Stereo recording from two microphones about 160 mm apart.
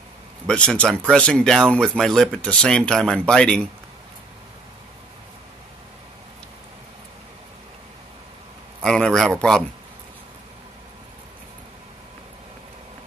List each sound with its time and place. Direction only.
0.5 s speech: 5° left (ahead or behind)
8.8 s speech: 5° left (ahead or behind)